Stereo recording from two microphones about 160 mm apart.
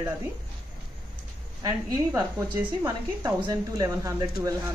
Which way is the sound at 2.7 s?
25° right (ahead or behind).